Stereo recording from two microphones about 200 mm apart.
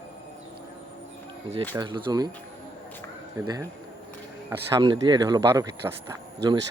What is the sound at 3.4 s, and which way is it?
Speech, 20° right (ahead or behind).